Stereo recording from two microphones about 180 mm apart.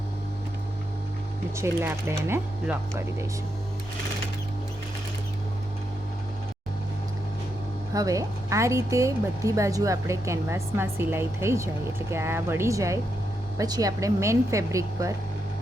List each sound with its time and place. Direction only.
1.5 s a woman's voice: 15° right (ahead or behind)
7.9 s a woman's voice: 20° right (ahead or behind)